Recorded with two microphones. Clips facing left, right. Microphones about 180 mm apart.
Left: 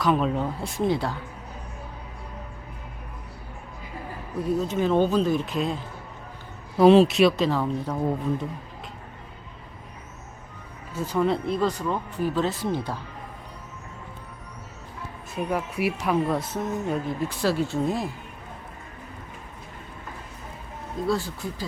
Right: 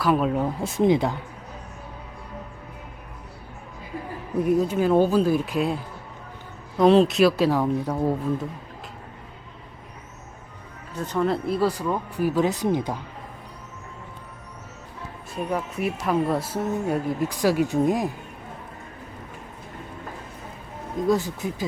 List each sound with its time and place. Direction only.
0.0 s speech: 5° right (ahead or behind)
0.8 s speech: 20° right (ahead or behind)
4.4 s speech: 15° right (ahead or behind)
6.7 s speech: 5° left (ahead or behind)
10.9 s speech: 5° left (ahead or behind); by 13.0 s 15° right (ahead or behind)
15.5 s speech: centre (ahead or behind); by 18.1 s 15° right (ahead or behind)
21.1 s speech: 20° right (ahead or behind)